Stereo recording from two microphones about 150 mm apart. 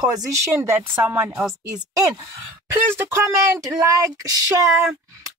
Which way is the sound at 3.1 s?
20° right (ahead or behind).